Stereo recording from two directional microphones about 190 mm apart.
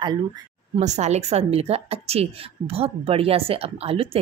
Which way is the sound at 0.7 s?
35° right (ahead or behind).